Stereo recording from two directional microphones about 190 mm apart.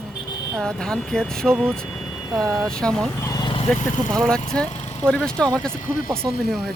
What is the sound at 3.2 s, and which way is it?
Vehicle, 20° left (ahead or behind).